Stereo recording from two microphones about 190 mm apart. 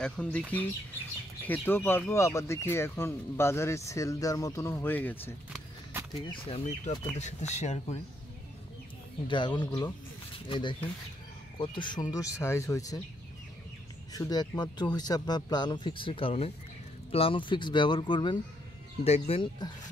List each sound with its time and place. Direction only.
0.0 s speech: 5° left (ahead or behind)
6.2 s speech: 30° left (ahead or behind)
9.3 s speech: 25° left (ahead or behind)
14.1 s speech: 20° left (ahead or behind)